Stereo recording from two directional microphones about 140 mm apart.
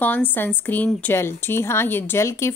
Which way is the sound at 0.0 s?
15° left (ahead or behind).